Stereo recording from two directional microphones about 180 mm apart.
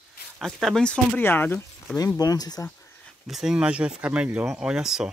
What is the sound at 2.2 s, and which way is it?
Speech, 20° left (ahead or behind).